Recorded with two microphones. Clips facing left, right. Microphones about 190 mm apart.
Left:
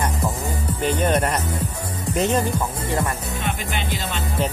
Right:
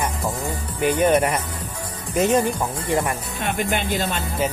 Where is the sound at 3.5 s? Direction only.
50° right (ahead or behind).